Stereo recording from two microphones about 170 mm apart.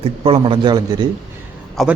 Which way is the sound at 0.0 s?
35° right (ahead or behind).